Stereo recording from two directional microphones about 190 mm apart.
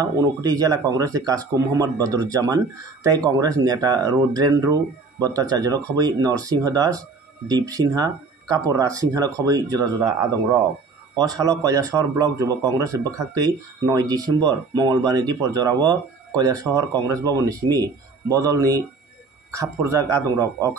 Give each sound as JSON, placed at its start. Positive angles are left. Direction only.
{"t": 0.0, "sound": "speech", "side_deg": -20}
{"t": 11.1, "sound": "speech", "side_deg": -20}